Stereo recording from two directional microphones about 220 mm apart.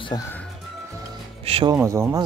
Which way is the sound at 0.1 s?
20° left (ahead or behind).